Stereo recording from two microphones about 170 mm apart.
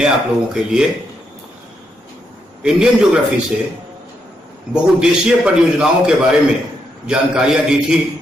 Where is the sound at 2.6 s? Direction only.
5° right (ahead or behind).